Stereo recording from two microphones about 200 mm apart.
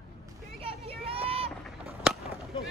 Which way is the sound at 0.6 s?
30° right (ahead or behind).